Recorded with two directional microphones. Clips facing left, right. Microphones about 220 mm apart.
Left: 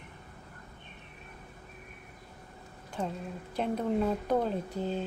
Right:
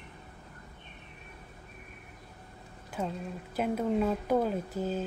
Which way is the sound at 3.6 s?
5° right (ahead or behind).